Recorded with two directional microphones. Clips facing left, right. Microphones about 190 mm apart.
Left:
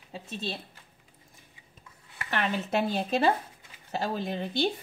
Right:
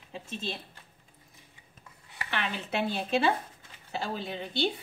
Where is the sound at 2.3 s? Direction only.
40° left (ahead or behind).